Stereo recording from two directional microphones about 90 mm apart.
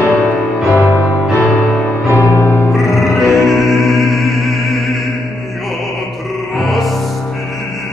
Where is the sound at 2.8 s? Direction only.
35° left (ahead or behind).